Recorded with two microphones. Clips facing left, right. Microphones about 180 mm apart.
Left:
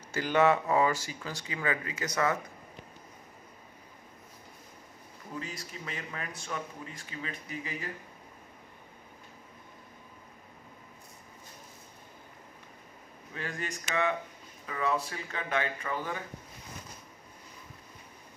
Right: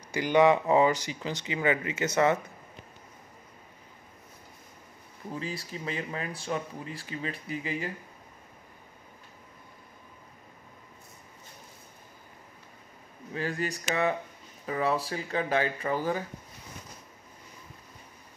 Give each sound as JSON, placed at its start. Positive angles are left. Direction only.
{"t": 0.1, "sound": "speech", "side_deg": -15}
{"t": 5.3, "sound": "speech", "side_deg": -30}
{"t": 13.3, "sound": "speech", "side_deg": -35}